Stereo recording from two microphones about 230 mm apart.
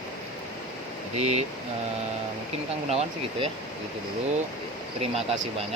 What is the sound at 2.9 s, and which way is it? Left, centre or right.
Speech, right.